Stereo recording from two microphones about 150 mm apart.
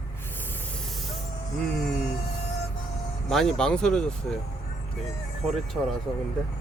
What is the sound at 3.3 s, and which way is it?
Speech, centre (ahead or behind).